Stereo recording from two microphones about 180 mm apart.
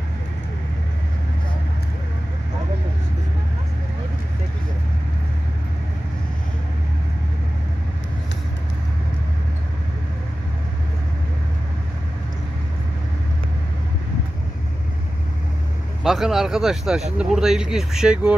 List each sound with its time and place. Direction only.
16.0 s speech: centre (ahead or behind)